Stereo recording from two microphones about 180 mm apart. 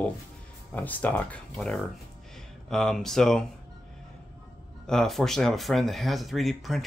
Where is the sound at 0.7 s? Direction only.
10° left (ahead or behind).